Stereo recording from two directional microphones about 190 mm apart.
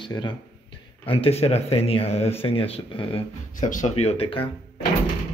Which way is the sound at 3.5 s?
40° left (ahead or behind).